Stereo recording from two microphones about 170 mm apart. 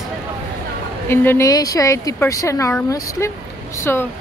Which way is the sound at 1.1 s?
15° left (ahead or behind).